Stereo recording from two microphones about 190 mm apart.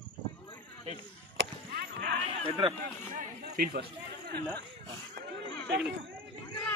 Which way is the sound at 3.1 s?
50° right (ahead or behind).